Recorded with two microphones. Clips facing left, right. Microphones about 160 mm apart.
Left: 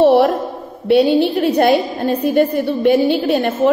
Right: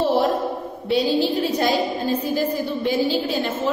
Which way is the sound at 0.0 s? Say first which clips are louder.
Left 8 dB; 65° left (ahead or behind).